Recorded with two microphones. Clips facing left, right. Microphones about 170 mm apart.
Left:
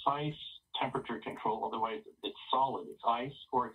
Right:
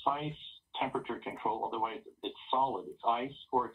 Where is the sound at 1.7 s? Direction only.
10° right (ahead or behind).